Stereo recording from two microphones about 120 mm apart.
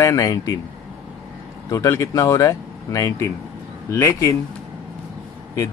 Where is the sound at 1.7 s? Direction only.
25° left (ahead or behind).